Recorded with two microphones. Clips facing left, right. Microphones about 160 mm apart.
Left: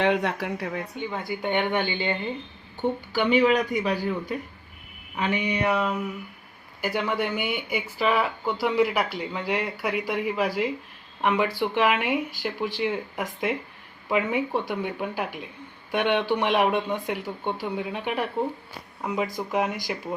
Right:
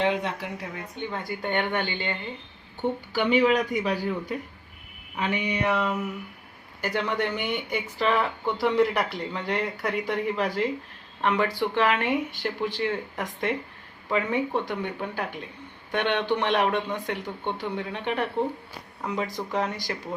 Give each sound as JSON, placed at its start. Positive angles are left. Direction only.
{"t": 0.0, "sound": "speech", "side_deg": 65}
{"t": 0.9, "sound": "speech", "side_deg": 10}
{"t": 5.6, "sound": "a sound", "side_deg": 0}
{"t": 6.8, "sound": "speech", "side_deg": 10}